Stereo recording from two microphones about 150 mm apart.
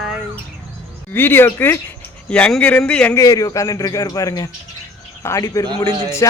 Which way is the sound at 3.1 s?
20° left (ahead or behind).